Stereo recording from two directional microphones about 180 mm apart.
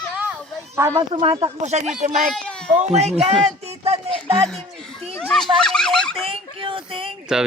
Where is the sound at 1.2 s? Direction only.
30° right (ahead or behind).